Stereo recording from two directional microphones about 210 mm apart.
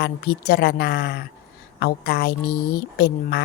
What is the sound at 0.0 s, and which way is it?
A woman's voice, 50° left (ahead or behind).